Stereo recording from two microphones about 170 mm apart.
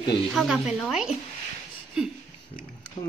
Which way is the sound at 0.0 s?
30° left (ahead or behind).